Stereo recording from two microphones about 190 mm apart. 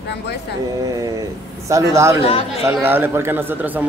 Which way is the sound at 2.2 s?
30° left (ahead or behind).